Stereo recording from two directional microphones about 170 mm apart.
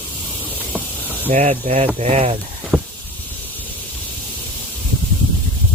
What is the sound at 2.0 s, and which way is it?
Speech, 35° right (ahead or behind).